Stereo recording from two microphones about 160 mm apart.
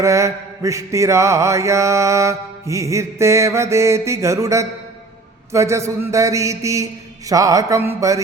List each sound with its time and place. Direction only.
0.0 s mantra: 20° right (ahead or behind)